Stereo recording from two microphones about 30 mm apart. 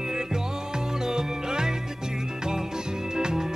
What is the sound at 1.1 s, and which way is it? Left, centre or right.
Music, right.